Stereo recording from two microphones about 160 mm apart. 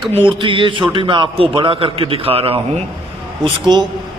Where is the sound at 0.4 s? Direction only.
30° right (ahead or behind).